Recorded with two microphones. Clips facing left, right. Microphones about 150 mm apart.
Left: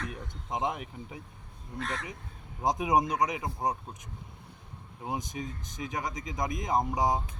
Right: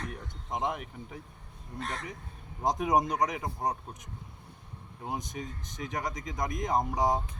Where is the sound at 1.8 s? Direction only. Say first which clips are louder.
Left 2 dB; 40° right (ahead or behind).